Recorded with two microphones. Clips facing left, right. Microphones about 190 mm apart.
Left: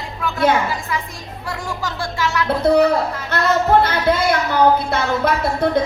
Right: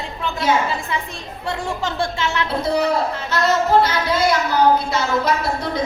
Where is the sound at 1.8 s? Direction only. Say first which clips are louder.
Left 2 dB; 25° right (ahead or behind).